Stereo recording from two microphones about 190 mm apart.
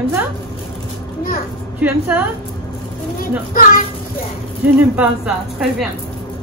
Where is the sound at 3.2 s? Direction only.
45° left (ahead or behind).